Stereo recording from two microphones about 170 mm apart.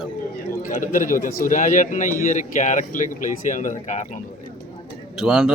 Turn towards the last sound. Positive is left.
turn(degrees=0)  # may be behind; listen again after turning